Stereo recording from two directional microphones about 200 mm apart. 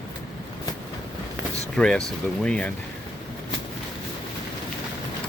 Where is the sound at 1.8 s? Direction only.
5° left (ahead or behind).